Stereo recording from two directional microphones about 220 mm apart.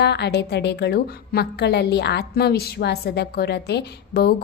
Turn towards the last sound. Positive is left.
turn(degrees=45)  # may be behind; listen again after turning